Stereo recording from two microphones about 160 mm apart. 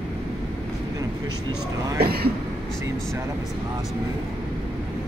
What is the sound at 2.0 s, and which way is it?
Speech, 75° right (ahead or behind).